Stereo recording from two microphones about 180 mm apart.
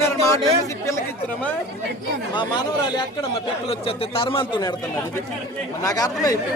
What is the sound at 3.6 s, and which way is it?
Speech, 30° left (ahead or behind).